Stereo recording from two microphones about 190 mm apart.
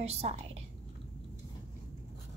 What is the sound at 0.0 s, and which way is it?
Speech, 35° right (ahead or behind).